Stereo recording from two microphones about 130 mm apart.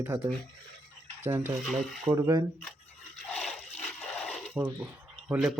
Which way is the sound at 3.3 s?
5° left (ahead or behind).